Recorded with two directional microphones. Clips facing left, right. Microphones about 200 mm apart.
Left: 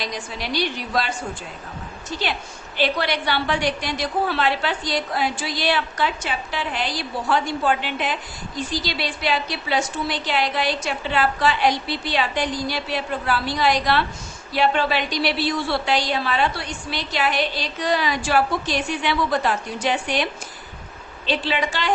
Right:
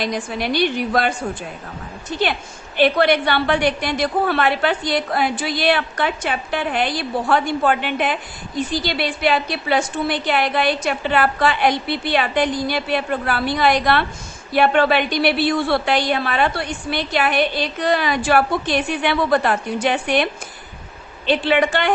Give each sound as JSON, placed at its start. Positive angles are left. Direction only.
{"t": 0.0, "sound": "a woman's voice", "side_deg": -55}
{"t": 2.7, "sound": "a woman's voice", "side_deg": -55}
{"t": 21.2, "sound": "a woman's voice", "side_deg": -55}